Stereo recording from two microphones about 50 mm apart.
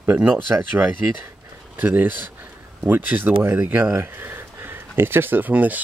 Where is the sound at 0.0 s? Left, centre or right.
Right.